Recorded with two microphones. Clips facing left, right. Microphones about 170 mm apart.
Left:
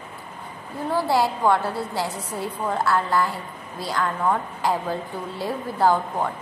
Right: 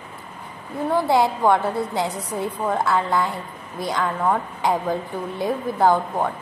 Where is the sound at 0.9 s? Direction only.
20° right (ahead or behind).